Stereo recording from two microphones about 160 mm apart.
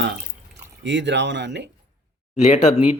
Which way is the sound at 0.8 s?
90° right.